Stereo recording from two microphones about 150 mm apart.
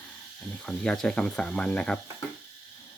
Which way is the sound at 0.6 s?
5° left (ahead or behind).